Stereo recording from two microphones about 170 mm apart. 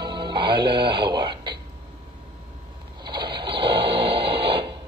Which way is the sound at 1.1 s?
15° right (ahead or behind).